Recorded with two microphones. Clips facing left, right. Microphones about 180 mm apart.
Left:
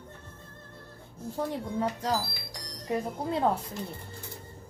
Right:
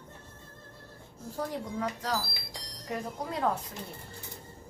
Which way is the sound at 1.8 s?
30° left (ahead or behind).